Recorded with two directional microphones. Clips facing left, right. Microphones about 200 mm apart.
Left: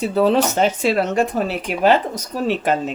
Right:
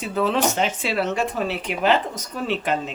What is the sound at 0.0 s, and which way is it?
Speech, 35° left (ahead or behind).